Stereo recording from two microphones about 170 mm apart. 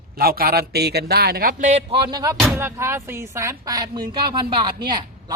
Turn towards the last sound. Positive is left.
turn(degrees=-25)  # may be behind; listen again after turning